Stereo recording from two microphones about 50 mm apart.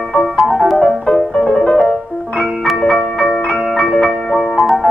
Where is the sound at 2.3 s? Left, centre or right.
Centre.